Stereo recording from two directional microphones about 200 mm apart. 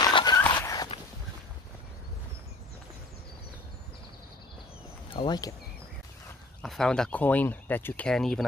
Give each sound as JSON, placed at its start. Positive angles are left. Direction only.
{"t": 0.0, "sound": "a sound", "side_deg": 20}
{"t": 5.1, "sound": "speech", "side_deg": 20}
{"t": 6.6, "sound": "speech", "side_deg": 0}